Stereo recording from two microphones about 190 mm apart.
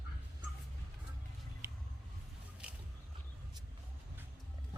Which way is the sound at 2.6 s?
5° right (ahead or behind).